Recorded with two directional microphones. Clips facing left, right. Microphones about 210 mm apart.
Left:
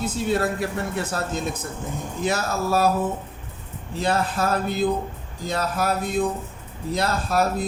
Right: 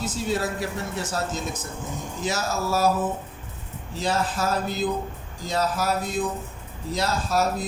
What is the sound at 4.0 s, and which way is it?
A woman's voice, 55° left (ahead or behind).